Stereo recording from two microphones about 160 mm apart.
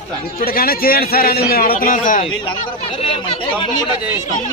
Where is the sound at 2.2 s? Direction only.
35° left (ahead or behind).